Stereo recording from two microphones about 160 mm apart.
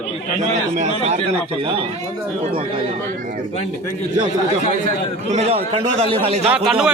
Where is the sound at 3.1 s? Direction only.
60° right (ahead or behind).